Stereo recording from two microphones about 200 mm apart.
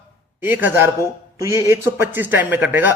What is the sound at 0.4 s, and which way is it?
Speech, 10° right (ahead or behind).